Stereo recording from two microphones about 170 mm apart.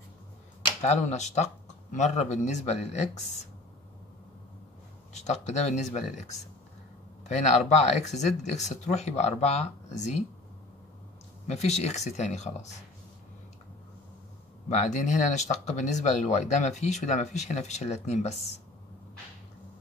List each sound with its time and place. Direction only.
0.8 s speech: 40° left (ahead or behind)
5.1 s speech: 40° left (ahead or behind)
11.4 s speech: 40° left (ahead or behind)
14.7 s speech: 45° left (ahead or behind)